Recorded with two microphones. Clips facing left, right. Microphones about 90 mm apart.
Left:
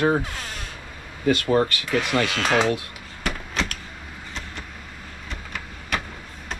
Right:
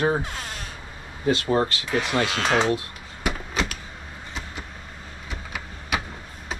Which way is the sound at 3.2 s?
5° right (ahead or behind).